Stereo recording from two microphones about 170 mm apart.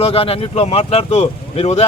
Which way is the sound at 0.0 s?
35° left (ahead or behind).